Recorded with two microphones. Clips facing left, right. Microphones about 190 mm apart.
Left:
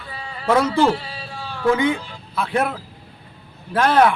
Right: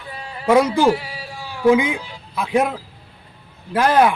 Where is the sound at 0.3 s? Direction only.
10° right (ahead or behind).